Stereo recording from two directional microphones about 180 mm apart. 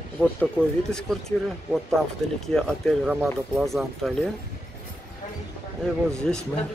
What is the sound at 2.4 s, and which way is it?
Speech, centre (ahead or behind).